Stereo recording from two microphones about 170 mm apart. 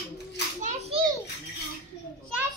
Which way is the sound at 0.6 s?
40° right (ahead or behind).